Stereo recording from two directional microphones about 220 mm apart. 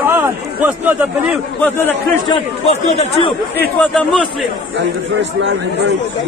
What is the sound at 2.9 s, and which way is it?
Speech, 30° left (ahead or behind).